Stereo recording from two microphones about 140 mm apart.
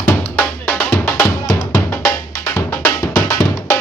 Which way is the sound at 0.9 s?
20° left (ahead or behind).